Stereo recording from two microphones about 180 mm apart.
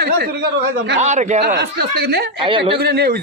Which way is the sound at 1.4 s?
65° right (ahead or behind).